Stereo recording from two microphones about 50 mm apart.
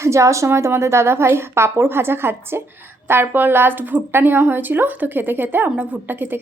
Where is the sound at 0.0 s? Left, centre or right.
Right.